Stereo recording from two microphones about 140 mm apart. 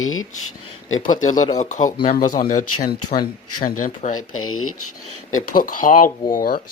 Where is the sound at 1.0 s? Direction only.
65° left (ahead or behind).